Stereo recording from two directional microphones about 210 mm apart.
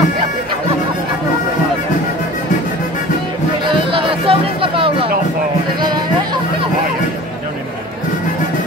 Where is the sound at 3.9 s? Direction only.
25° right (ahead or behind).